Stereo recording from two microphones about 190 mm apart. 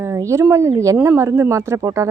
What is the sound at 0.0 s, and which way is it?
Speech, 15° right (ahead or behind).